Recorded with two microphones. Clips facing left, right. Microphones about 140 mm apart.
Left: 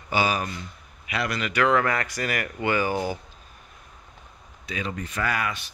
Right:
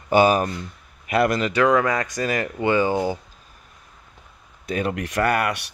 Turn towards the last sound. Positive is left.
turn(degrees=-60)  # may be behind; listen again after turning